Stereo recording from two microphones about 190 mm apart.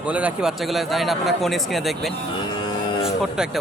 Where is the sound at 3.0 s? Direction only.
5° right (ahead or behind).